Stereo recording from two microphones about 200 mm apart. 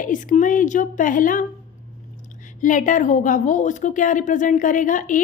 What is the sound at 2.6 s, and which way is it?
A woman's voice, 40° left (ahead or behind).